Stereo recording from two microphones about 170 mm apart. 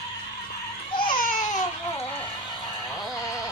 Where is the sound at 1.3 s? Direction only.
50° left (ahead or behind).